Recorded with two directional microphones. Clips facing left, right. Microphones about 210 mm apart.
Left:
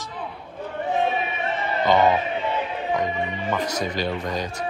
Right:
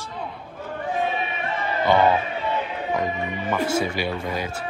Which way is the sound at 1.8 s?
10° right (ahead or behind).